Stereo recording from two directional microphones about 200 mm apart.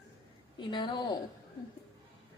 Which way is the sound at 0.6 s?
25° left (ahead or behind).